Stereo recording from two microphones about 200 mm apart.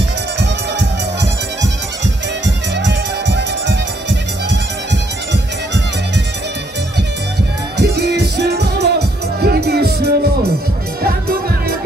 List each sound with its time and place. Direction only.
2.4 s music: 60° right (ahead or behind)
7.7 s music: 60° right (ahead or behind)